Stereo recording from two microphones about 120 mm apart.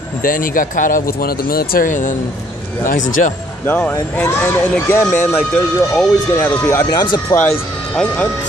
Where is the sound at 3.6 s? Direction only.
15° left (ahead or behind).